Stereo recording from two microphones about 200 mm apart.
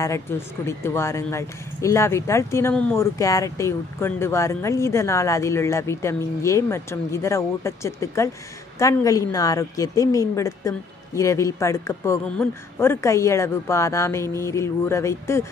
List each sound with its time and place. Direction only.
0.0 s speech: 15° left (ahead or behind)